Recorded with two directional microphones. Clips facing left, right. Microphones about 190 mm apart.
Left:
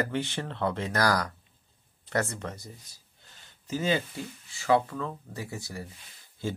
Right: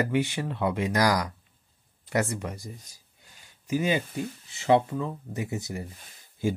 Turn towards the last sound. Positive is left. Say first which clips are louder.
# right 6 dB
turn(degrees=-15)  # may be behind; listen again after turning